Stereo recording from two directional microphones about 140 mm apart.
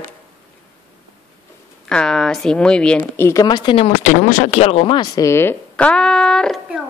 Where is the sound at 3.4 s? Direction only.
30° left (ahead or behind).